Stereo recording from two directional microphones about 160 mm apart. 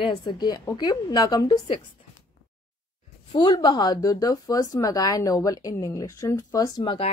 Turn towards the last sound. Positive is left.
turn(degrees=30)  # may be behind; listen again after turning